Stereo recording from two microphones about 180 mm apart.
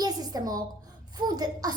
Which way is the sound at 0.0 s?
20° right (ahead or behind).